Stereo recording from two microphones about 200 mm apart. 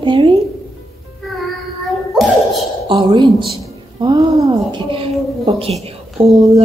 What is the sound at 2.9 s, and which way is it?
A woman's voice, 25° right (ahead or behind).